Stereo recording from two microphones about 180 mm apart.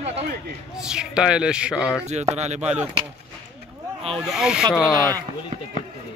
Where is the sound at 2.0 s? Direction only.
40° right (ahead or behind).